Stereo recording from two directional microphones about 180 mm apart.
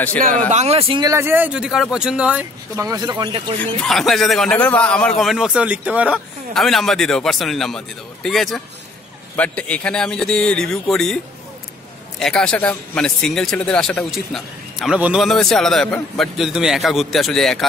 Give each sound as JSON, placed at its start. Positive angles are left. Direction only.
{"t": 0.5, "sound": "speech", "side_deg": -35}
{"t": 1.0, "sound": "speech", "side_deg": -15}
{"t": 2.8, "sound": "speech", "side_deg": -20}
{"t": 3.5, "sound": "a man's voice", "side_deg": 5}
{"t": 12.2, "sound": "a man's voice", "side_deg": 5}